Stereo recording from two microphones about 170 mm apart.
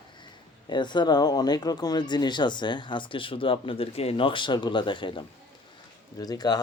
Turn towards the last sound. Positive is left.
turn(degrees=20)  # may be behind; listen again after turning